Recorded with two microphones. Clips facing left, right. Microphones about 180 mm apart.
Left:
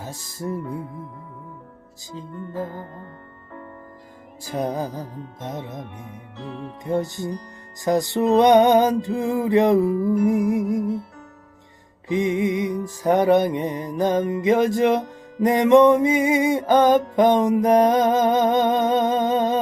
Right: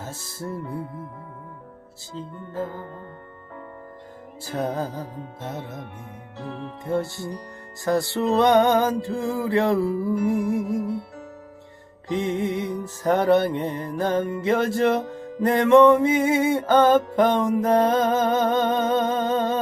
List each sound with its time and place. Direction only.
0.0 s music: 15° left (ahead or behind)
2.1 s music: 15° left (ahead or behind)
4.4 s music: 15° left (ahead or behind)
6.8 s music: 15° left (ahead or behind)
12.0 s music: 15° left (ahead or behind)